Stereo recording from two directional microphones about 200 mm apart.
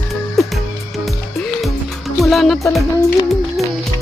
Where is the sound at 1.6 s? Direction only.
Centre (ahead or behind).